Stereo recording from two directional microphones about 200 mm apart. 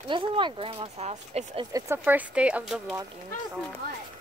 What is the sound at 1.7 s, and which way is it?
Speech, 15° right (ahead or behind).